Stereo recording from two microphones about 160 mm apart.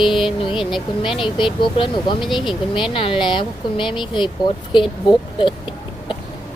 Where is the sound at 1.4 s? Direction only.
30° left (ahead or behind).